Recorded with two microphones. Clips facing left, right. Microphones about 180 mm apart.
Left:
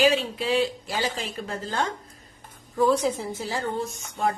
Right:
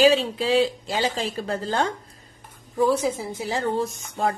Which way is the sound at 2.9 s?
10° right (ahead or behind).